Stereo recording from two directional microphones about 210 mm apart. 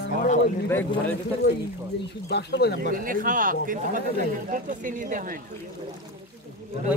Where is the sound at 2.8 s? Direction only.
40° right (ahead or behind).